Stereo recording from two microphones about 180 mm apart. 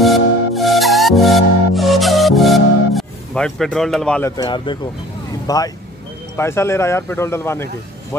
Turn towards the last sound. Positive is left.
turn(degrees=15)  # may be behind; listen again after turning